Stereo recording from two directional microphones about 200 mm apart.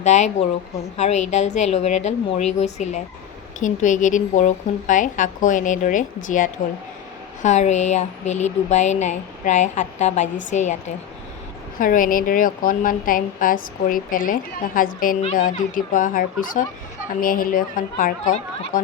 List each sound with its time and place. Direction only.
0.0 s a woman's voice: 35° left (ahead or behind)